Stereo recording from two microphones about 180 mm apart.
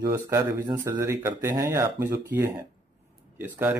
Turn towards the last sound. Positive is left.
turn(degrees=-10)  # may be behind; listen again after turning